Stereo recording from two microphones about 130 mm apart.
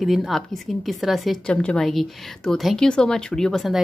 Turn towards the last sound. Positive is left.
turn(degrees=0)  # may be behind; listen again after turning